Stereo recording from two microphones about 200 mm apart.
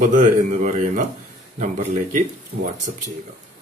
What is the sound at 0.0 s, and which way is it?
A man's voice, 40° right (ahead or behind).